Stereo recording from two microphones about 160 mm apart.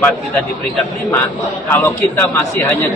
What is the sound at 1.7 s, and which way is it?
A man's voice, 15° left (ahead or behind).